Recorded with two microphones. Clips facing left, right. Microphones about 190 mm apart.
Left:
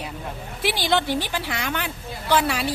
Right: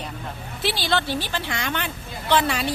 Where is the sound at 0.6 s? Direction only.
15° left (ahead or behind).